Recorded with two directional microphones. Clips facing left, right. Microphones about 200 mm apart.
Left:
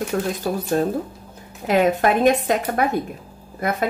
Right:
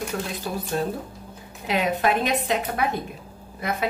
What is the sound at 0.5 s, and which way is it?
Speech, 45° left (ahead or behind).